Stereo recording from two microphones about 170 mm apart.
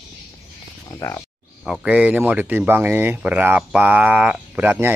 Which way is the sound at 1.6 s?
5° right (ahead or behind).